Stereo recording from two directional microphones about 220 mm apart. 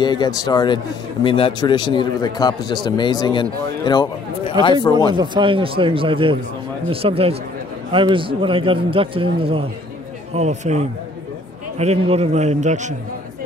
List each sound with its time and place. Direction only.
0.0 s a man's voice: 20° left (ahead or behind)
5.1 s a man's voice: 20° right (ahead or behind)